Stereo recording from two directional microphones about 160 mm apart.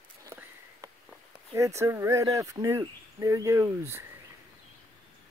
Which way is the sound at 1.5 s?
20° right (ahead or behind).